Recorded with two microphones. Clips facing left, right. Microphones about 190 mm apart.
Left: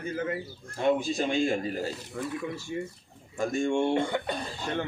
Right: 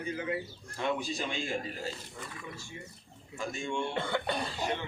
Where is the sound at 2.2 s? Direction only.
75° left (ahead or behind).